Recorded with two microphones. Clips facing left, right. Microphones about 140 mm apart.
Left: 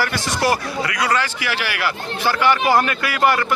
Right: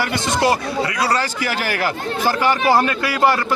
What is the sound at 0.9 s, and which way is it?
A man's voice, 30° right (ahead or behind).